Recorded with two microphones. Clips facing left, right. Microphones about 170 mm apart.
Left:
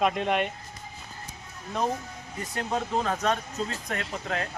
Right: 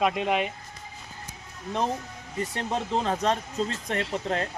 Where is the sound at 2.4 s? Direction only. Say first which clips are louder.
Right 1 dB; 30° right (ahead or behind).